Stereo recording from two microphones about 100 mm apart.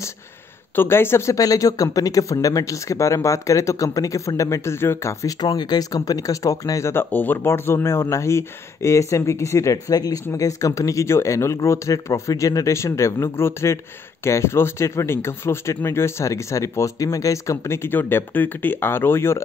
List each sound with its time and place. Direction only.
0.7 s speech: 25° left (ahead or behind)
5.4 s speech: 40° left (ahead or behind); by 19.4 s 25° left (ahead or behind)